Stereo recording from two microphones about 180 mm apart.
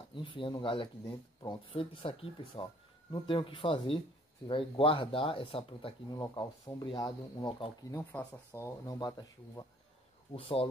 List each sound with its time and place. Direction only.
0.1 s speech: 30° left (ahead or behind)
8.0 s speech: 10° left (ahead or behind)
10.3 s speech: 30° left (ahead or behind)